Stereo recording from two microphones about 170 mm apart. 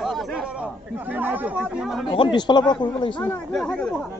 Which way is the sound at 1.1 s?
10° right (ahead or behind).